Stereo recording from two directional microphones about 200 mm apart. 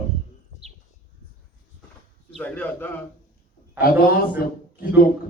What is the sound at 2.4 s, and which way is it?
Speech, 10° left (ahead or behind).